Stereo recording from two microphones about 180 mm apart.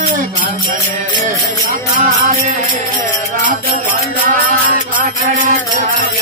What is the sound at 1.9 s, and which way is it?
Music, 40° right (ahead or behind).